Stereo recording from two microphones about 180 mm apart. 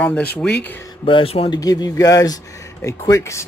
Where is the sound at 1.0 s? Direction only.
30° left (ahead or behind).